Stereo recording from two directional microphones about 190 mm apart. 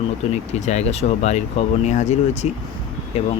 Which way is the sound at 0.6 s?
35° left (ahead or behind).